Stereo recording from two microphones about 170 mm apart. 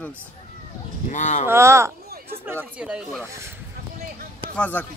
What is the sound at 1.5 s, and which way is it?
Speech, 15° right (ahead or behind).